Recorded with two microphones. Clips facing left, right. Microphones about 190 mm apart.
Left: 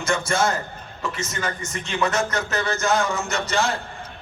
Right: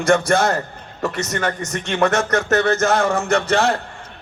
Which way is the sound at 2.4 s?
50° right (ahead or behind).